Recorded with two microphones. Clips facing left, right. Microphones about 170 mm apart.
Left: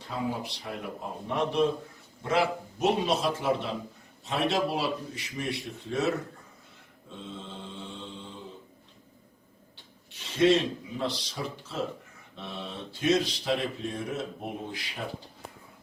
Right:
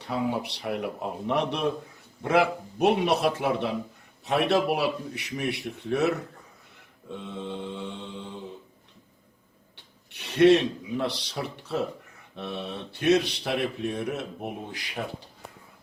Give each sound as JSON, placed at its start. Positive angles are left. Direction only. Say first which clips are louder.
{"t": 0.0, "sound": "a man's voice", "louder": "right 4 dB", "side_deg": -65}
{"t": 9.7, "sound": "a man's voice", "louder": "right 3 dB", "side_deg": -65}